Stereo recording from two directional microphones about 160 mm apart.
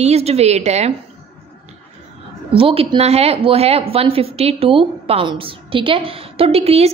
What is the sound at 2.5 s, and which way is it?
A woman's voice, 35° right (ahead or behind).